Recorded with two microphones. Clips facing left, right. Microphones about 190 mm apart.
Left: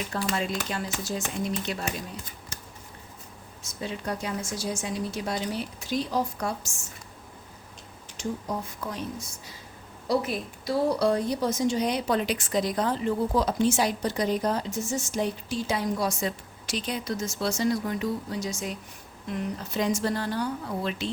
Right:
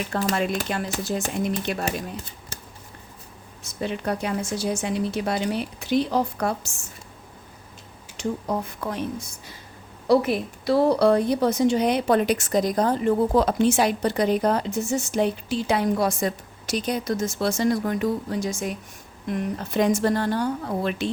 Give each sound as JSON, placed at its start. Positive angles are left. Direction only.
{"t": 0.1, "sound": "a woman's voice", "side_deg": -50}
{"t": 1.8, "sound": "speech", "side_deg": -30}
{"t": 3.6, "sound": "a woman's voice", "side_deg": -65}
{"t": 8.2, "sound": "a woman's voice", "side_deg": -60}